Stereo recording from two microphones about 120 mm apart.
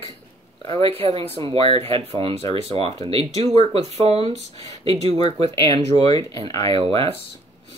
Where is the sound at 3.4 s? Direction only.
65° right (ahead or behind).